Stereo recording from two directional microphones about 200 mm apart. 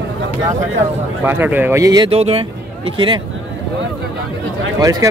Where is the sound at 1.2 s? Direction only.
10° right (ahead or behind); by 3.2 s 25° right (ahead or behind).